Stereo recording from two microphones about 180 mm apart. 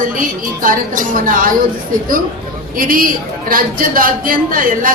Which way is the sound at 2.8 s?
50° right (ahead or behind).